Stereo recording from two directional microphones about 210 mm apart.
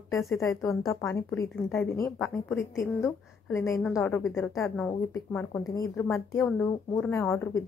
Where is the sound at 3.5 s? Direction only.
10° left (ahead or behind).